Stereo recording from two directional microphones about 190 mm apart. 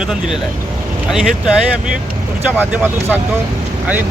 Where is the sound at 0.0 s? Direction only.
Centre (ahead or behind).